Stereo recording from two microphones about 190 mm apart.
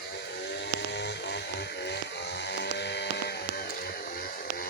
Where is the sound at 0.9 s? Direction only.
65° left (ahead or behind).